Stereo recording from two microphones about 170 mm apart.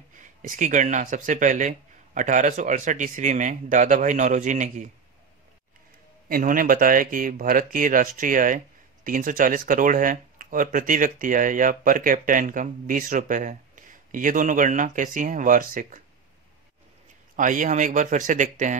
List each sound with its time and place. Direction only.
0.2 s speech: 45° right (ahead or behind)
6.2 s speech: 55° right (ahead or behind)
17.4 s speech: 50° right (ahead or behind)